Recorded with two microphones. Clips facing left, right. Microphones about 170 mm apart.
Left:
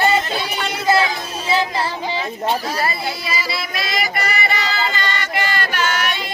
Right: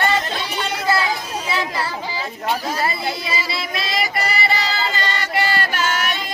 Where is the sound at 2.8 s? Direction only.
25° right (ahead or behind).